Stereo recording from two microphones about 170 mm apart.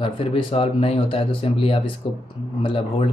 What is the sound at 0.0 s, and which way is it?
Speech, 30° left (ahead or behind).